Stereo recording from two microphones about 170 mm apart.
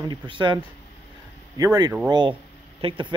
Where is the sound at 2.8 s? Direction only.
30° right (ahead or behind).